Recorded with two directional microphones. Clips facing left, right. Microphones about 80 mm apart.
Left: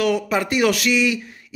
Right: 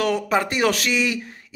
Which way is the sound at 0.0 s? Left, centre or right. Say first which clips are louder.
Left 1 dB; right.